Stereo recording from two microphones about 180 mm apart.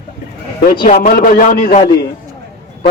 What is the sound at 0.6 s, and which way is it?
A man's voice, 55° left (ahead or behind).